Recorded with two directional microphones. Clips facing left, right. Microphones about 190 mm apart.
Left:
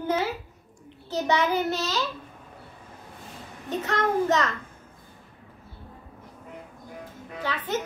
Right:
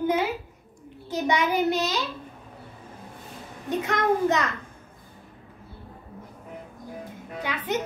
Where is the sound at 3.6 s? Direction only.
15° right (ahead or behind).